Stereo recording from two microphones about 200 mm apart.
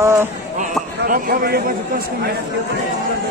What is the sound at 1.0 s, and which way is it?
A man's voice, 45° right (ahead or behind).